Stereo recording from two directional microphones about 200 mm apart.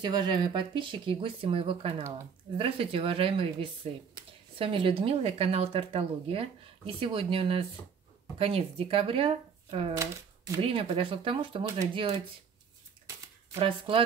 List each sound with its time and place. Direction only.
0.0 s speech: 25° right (ahead or behind)
9.9 s speech: 15° right (ahead or behind)
10.6 s speech: 25° right (ahead or behind)
13.6 s speech: 25° right (ahead or behind)